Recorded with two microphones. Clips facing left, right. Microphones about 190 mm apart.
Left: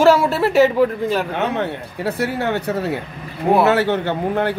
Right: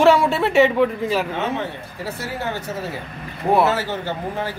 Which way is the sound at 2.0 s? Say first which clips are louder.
Left 7 dB; 60° left (ahead or behind).